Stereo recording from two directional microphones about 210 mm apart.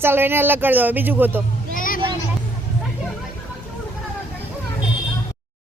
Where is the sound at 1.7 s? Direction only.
40° left (ahead or behind).